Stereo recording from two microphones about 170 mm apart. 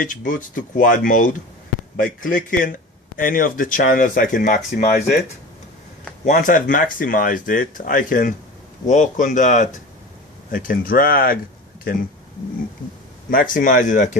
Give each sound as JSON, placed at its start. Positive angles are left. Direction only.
{"t": 0.0, "sound": "speech", "side_deg": 55}
{"t": 6.2, "sound": "speech", "side_deg": 50}
{"t": 13.3, "sound": "speech", "side_deg": 55}